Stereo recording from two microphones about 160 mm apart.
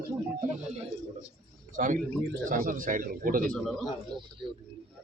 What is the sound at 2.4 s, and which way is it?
Speech, 55° right (ahead or behind).